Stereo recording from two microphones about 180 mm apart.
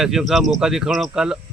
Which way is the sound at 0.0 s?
5° right (ahead or behind).